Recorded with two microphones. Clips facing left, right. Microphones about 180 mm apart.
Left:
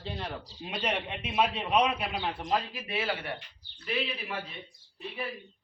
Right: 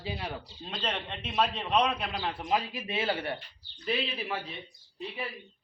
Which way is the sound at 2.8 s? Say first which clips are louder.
Right 2 dB; 25° right (ahead or behind).